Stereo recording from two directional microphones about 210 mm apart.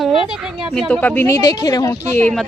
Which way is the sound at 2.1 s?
5° left (ahead or behind).